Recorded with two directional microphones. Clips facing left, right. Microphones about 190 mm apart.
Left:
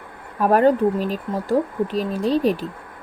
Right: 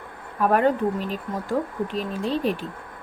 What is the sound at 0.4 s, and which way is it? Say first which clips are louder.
Speech: left 4 dB; 35° left (ahead or behind).